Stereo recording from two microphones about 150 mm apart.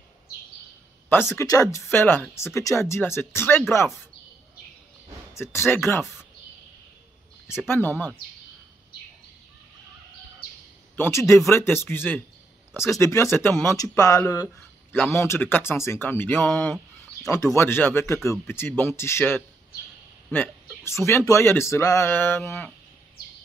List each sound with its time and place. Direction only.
1.0 s speech: 15° left (ahead or behind)
5.3 s speech: 15° left (ahead or behind)
7.6 s speech: 15° left (ahead or behind)
11.0 s speech: 15° left (ahead or behind)
14.3 s a sound: 20° left (ahead or behind)
15.0 s speech: 15° left (ahead or behind)